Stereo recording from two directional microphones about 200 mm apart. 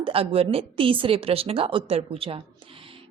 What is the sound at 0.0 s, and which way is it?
A woman's voice, 30° right (ahead or behind).